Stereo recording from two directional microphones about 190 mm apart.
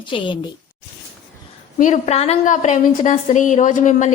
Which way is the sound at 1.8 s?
35° left (ahead or behind).